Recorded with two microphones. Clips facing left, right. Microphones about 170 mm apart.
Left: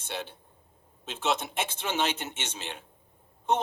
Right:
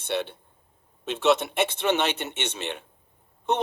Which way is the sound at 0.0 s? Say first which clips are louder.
Right 8 dB; 65° right (ahead or behind).